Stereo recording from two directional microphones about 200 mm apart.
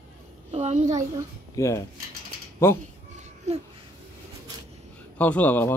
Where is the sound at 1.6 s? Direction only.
15° left (ahead or behind).